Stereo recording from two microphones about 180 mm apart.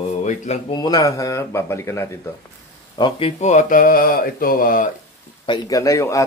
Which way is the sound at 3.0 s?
30° left (ahead or behind).